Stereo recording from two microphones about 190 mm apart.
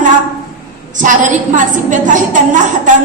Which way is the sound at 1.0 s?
40° right (ahead or behind).